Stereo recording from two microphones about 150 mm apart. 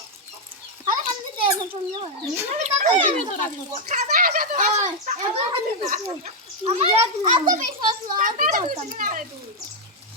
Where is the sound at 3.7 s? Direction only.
50° right (ahead or behind).